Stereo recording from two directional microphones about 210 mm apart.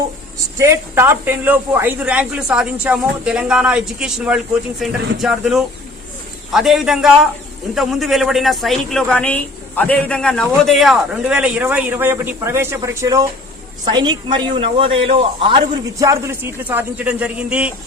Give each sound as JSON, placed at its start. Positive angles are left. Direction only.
{"t": 0.6, "sound": "a woman's voice", "side_deg": -15}